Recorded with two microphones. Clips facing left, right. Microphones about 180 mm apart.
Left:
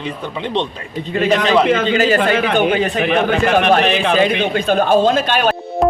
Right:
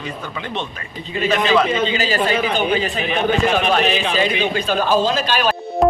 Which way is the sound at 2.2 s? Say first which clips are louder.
Left 4 dB; 75° left (ahead or behind).